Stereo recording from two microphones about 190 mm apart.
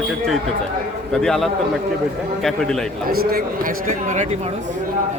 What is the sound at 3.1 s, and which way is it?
Speech, 50° right (ahead or behind).